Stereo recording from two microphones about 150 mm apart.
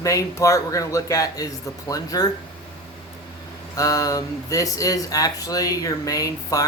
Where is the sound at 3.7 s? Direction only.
25° left (ahead or behind).